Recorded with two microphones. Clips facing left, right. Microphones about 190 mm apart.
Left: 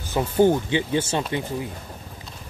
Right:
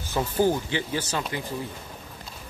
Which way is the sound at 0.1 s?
20° left (ahead or behind).